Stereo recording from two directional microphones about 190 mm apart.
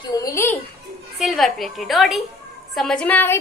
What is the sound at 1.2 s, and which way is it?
A woman's voice, centre (ahead or behind).